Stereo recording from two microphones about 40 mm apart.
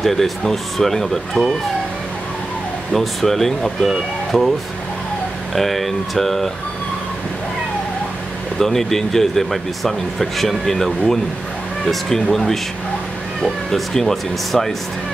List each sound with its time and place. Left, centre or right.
0.0 s a man's voice: centre
2.9 s a man's voice: centre
5.5 s speech: centre
8.5 s a man's voice: centre